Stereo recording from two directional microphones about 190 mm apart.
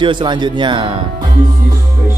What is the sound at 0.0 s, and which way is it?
Speech, 25° right (ahead or behind).